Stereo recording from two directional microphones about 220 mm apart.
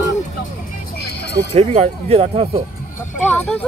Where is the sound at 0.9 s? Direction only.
45° left (ahead or behind).